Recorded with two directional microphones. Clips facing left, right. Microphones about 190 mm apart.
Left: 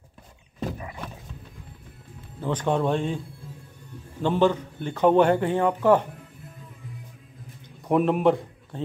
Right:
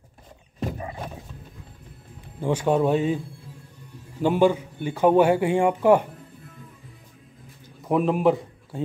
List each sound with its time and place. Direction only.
0.7 s roaring cats: 35° right (ahead or behind)
2.4 s a man's voice: 10° right (ahead or behind)
4.2 s a man's voice: 10° right (ahead or behind)
7.8 s a man's voice: centre (ahead or behind)